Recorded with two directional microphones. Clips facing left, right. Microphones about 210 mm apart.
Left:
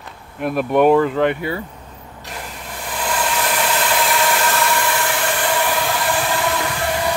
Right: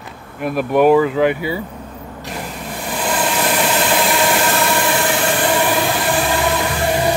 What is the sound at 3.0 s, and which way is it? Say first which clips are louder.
Vehicle: right 3 dB; 25° right (ahead or behind).